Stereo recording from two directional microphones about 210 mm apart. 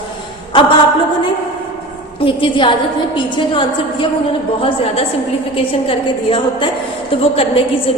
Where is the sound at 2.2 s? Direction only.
25° left (ahead or behind).